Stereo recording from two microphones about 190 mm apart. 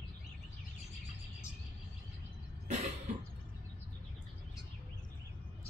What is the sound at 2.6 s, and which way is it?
Cough, 40° right (ahead or behind).